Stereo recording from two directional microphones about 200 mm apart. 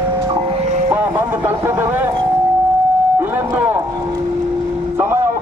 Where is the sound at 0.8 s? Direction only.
10° right (ahead or behind).